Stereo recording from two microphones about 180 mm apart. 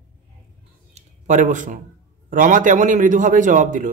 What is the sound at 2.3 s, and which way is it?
Speech, 45° right (ahead or behind).